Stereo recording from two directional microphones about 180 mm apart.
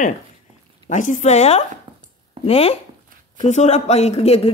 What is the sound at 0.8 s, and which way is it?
A woman's voice, 45° left (ahead or behind).